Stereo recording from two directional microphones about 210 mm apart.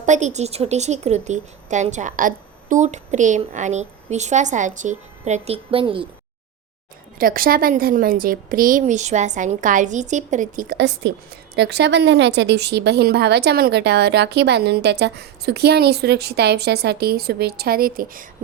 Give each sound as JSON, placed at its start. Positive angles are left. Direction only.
{"t": 0.0, "sound": "a woman's voice", "side_deg": -35}
{"t": 7.2, "sound": "a woman's voice", "side_deg": -45}